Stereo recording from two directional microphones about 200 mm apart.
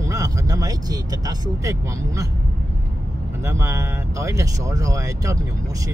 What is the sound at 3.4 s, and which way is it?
Speech, 15° right (ahead or behind).